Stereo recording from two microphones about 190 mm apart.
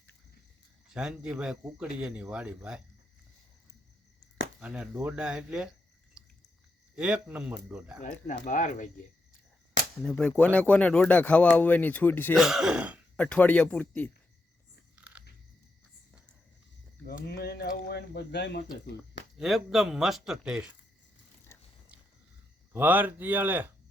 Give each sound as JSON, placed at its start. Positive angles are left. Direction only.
{"t": 0.9, "sound": "speech", "side_deg": -5}
{"t": 4.6, "sound": "speech", "side_deg": -5}
{"t": 6.2, "sound": "drip", "side_deg": -5}
{"t": 6.9, "sound": "speech", "side_deg": -5}
{"t": 8.4, "sound": "speech", "side_deg": 40}
{"t": 10.0, "sound": "speech", "side_deg": 5}
{"t": 12.3, "sound": "speech", "side_deg": 0}
{"t": 13.1, "sound": "speech", "side_deg": 5}
{"t": 14.9, "sound": "biting", "side_deg": -5}
{"t": 17.1, "sound": "speech", "side_deg": 55}
{"t": 19.4, "sound": "speech", "side_deg": 0}
{"t": 21.5, "sound": "a sound", "side_deg": 15}
{"t": 22.7, "sound": "speech", "side_deg": -10}